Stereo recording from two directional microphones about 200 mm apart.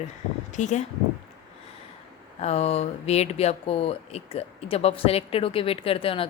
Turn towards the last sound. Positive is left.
turn(degrees=25)  # may be behind; listen again after turning